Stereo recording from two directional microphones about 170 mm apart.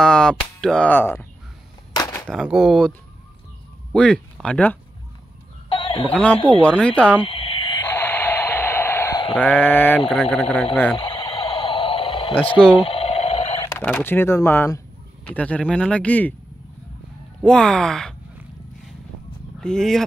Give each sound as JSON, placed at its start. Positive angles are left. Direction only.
{"t": 0.0, "sound": "speech", "side_deg": 5}
{"t": 2.0, "sound": "a sound", "side_deg": 20}
{"t": 2.2, "sound": "speech", "side_deg": -5}
{"t": 3.9, "sound": "speech", "side_deg": 5}
{"t": 5.7, "sound": "chicken", "side_deg": 30}
{"t": 6.6, "sound": "speech", "side_deg": 5}
{"t": 7.2, "sound": "a sound", "side_deg": 30}
{"t": 9.4, "sound": "speech", "side_deg": 10}
{"t": 11.0, "sound": "a sound", "side_deg": 30}
{"t": 13.7, "sound": "speech", "side_deg": 10}
{"t": 17.4, "sound": "speech", "side_deg": 5}
{"t": 19.6, "sound": "speech", "side_deg": 5}